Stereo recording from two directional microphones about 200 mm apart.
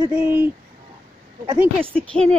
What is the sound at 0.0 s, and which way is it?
Speech, 10° right (ahead or behind).